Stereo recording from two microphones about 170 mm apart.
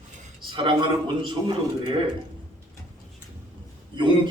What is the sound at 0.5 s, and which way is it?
A man's voice, 30° right (ahead or behind).